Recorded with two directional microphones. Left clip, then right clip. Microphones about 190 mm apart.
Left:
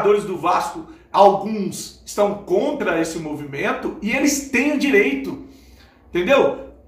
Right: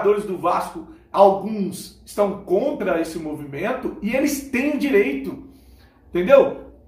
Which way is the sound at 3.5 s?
5° left (ahead or behind).